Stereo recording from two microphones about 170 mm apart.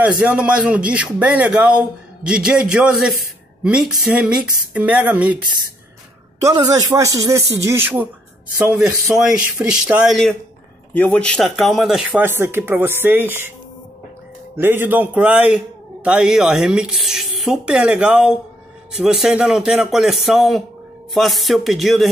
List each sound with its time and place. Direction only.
0.0 s a man's voice: 5° right (ahead or behind)
6.4 s a man's voice: 20° right (ahead or behind)
9.1 s a man's voice: 5° right (ahead or behind)
14.6 s a man's voice: 10° right (ahead or behind)